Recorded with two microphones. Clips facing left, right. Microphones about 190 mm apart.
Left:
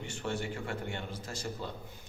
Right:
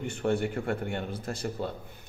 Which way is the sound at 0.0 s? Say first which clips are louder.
Right 8 dB; 55° right (ahead or behind).